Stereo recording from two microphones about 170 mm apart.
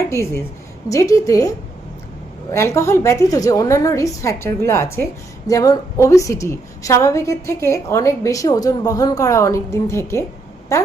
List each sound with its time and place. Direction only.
0.9 s a woman's voice: 20° left (ahead or behind)